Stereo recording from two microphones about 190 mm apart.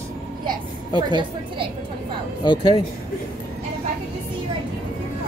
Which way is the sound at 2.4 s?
25° left (ahead or behind).